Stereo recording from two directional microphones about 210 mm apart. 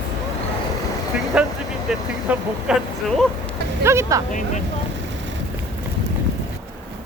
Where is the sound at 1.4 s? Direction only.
5° right (ahead or behind).